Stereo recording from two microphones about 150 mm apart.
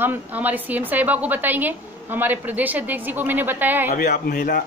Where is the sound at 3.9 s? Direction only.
70° left (ahead or behind).